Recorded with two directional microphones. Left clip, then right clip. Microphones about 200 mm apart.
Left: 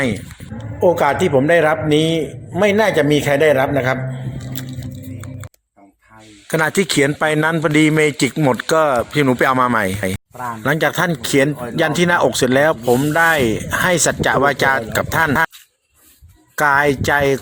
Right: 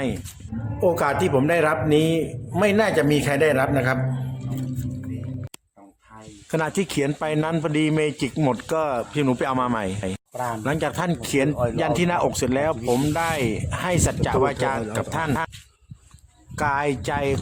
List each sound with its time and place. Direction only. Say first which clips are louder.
0.8 s a man's voice: left 6 dB; 10° left (ahead or behind)
6.5 s a man's voice: left 8 dB; 15° left (ahead or behind)
16.6 s speech: left 9 dB; 20° left (ahead or behind)